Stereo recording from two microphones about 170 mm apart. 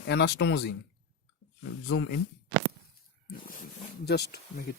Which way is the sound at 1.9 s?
85° left.